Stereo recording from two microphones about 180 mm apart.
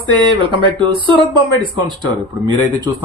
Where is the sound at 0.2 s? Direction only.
25° right (ahead or behind).